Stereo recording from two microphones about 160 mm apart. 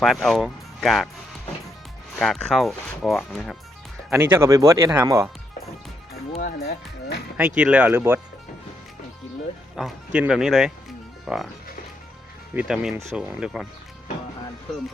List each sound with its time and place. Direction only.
0.0 s speech: centre (ahead or behind)
2.1 s speech: centre (ahead or behind)
4.1 s speech: 15° right (ahead or behind)
6.4 s speech: 70° left (ahead or behind)
7.3 s speech: 10° right (ahead or behind)
9.7 s speech: 5° right (ahead or behind)
12.5 s speech: 5° right (ahead or behind)